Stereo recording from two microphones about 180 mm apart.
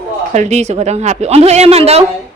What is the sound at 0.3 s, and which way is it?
Speech, 40° right (ahead or behind).